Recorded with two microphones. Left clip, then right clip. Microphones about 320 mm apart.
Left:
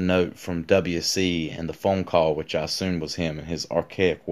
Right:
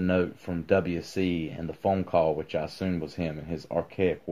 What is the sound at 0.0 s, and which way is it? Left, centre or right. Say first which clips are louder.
Speech: left 4 dB; left.